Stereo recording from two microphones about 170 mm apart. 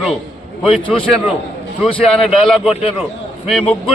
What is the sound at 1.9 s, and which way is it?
A man's voice, 5° left (ahead or behind).